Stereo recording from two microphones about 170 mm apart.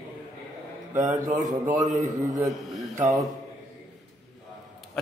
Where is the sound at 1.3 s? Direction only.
45° right (ahead or behind).